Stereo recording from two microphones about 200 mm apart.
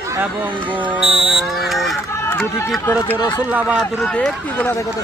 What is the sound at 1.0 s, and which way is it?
Speech, 30° right (ahead or behind).